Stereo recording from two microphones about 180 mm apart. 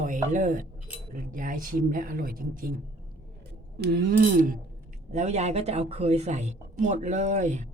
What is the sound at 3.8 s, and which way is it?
Speech, 65° right (ahead or behind).